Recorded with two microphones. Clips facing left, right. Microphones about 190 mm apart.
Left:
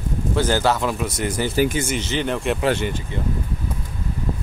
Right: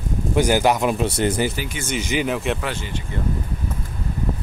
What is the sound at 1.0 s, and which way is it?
Speech, 30° right (ahead or behind).